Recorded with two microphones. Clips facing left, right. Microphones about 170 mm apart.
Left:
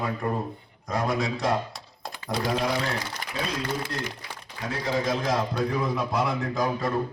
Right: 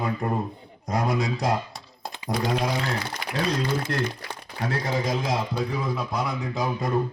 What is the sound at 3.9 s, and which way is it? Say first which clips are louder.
Speech: right 6 dB; 60° right (ahead or behind).